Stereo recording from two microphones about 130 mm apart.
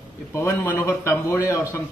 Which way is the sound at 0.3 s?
20° left (ahead or behind).